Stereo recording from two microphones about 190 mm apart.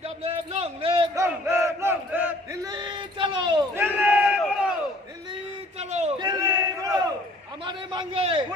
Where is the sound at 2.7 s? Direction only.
25° right (ahead or behind).